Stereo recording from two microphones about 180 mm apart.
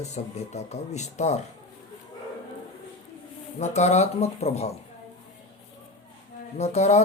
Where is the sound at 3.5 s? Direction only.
40° left (ahead or behind).